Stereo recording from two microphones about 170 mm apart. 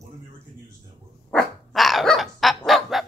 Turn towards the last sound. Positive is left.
turn(degrees=0)  # may be behind; listen again after turning